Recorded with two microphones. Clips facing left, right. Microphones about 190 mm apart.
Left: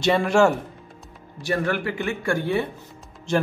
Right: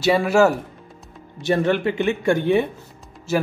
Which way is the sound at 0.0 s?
5° right (ahead or behind).